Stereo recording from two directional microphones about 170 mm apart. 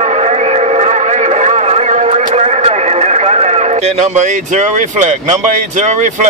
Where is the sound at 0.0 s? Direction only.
40° right (ahead or behind).